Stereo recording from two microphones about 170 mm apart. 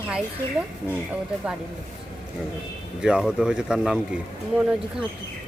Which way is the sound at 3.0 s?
5° right (ahead or behind).